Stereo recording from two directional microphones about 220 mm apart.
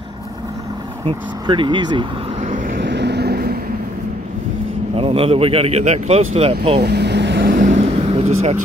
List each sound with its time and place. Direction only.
1.0 s speech: 20° right (ahead or behind)
2.8 s vehicle: 50° right (ahead or behind)
4.9 s speech: 25° right (ahead or behind)
6.8 s vehicle: 50° right (ahead or behind)
7.7 s vehicle: 25° right (ahead or behind)